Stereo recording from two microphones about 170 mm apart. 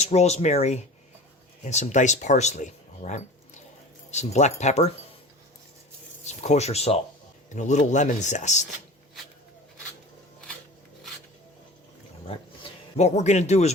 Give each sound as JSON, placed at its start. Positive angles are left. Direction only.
{"t": 0.0, "sound": "speech", "side_deg": 40}
{"t": 6.2, "sound": "speech", "side_deg": 40}
{"t": 13.0, "sound": "speech", "side_deg": 40}